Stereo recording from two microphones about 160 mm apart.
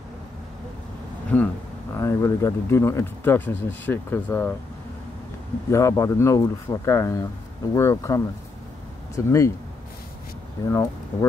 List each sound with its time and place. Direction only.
1.3 s speech: 10° left (ahead or behind)
5.7 s speech: 20° left (ahead or behind)
10.6 s speech: 20° left (ahead or behind)